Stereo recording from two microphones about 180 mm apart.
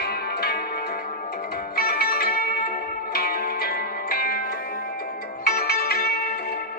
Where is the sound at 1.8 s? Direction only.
55° left (ahead or behind).